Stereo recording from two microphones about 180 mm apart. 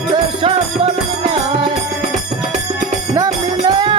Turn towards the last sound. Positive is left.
turn(degrees=-25)  # may be behind; listen again after turning